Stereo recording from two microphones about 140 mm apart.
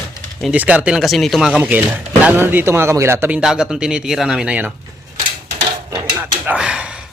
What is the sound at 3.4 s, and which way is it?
A man's voice, 5° right (ahead or behind).